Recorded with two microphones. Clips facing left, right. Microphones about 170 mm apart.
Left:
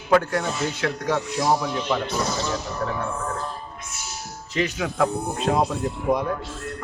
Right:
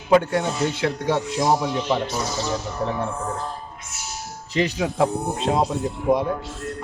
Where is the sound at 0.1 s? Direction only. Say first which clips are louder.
Right 2 dB; 25° right (ahead or behind).